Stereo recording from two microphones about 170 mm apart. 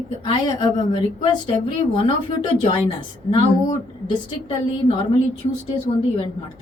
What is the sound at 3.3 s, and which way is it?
Speech, 30° left (ahead or behind).